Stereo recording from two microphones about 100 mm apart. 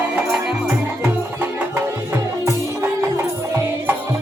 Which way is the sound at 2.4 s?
25° right (ahead or behind).